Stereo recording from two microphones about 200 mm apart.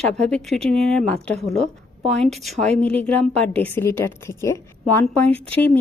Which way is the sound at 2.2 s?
Centre (ahead or behind).